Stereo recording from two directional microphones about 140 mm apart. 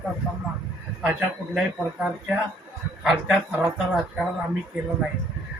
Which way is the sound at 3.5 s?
10° right (ahead or behind).